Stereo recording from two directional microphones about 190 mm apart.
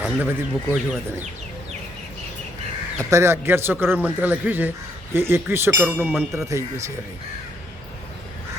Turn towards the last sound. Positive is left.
turn(degrees=-15)  # may be behind; listen again after turning